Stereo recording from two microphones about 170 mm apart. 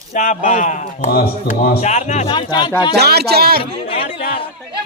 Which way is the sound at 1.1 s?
60° left (ahead or behind).